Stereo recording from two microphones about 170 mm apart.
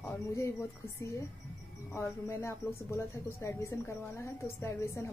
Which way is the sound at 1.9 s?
15° left (ahead or behind).